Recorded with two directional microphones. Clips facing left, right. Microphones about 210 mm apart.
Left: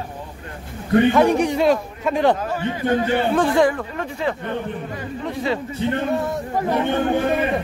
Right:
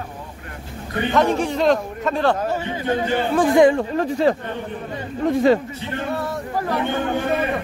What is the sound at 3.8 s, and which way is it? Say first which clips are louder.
Speech: right 7 dB; 35° right (ahead or behind).